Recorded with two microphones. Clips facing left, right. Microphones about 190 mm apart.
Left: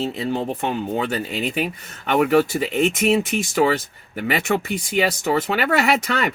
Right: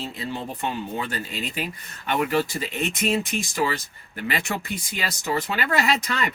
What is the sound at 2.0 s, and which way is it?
Speech, 60° left (ahead or behind).